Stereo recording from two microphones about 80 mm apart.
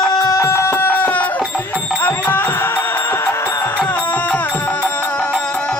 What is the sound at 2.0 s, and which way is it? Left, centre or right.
Music, left.